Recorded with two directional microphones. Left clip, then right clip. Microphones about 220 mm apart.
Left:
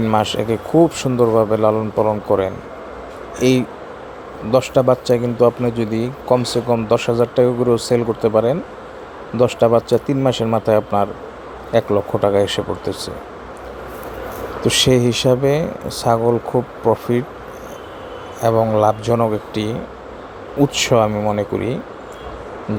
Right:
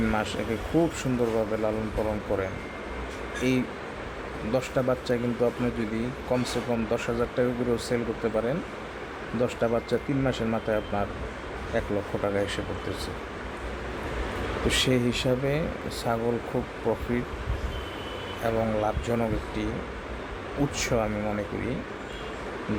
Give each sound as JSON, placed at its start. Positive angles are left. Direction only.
{"t": 0.1, "sound": "speech", "side_deg": 30}
{"t": 14.7, "sound": "speech", "side_deg": 30}
{"t": 18.4, "sound": "speech", "side_deg": 30}